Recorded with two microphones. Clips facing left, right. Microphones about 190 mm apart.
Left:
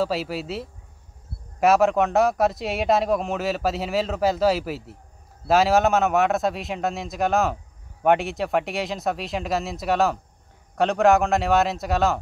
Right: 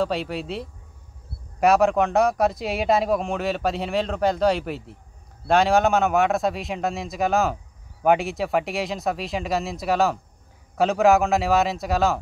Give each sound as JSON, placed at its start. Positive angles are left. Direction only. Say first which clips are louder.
{"t": 0.0, "sound": "speech", "louder": "even", "side_deg": 5}